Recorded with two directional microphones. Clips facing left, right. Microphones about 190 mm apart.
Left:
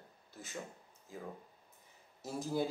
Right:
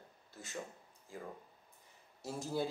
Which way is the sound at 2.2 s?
15° left (ahead or behind).